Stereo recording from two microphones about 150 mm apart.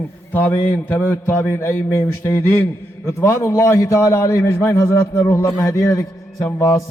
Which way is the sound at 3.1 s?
20° left (ahead or behind).